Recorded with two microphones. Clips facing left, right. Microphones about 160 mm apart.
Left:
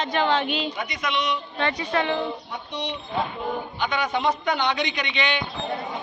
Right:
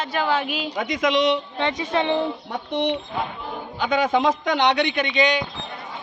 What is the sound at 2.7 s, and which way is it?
Speech, 60° right (ahead or behind).